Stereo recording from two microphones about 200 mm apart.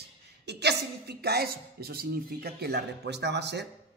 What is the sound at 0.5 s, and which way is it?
A man's voice, 55° right (ahead or behind).